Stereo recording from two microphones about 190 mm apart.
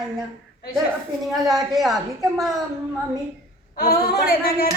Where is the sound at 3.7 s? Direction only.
50° left (ahead or behind).